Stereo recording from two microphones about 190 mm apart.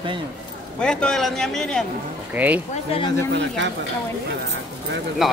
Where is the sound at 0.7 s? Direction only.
5° left (ahead or behind).